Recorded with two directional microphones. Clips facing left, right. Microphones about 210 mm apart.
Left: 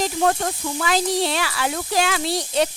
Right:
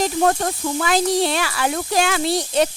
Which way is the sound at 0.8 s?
50° right (ahead or behind).